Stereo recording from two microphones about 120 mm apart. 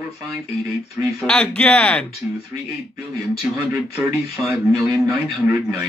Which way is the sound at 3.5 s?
20° right (ahead or behind).